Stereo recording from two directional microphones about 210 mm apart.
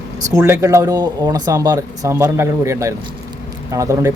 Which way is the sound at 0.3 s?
15° right (ahead or behind).